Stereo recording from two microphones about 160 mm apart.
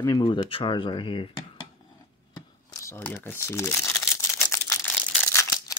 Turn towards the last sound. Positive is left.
turn(degrees=15)  # may be behind; listen again after turning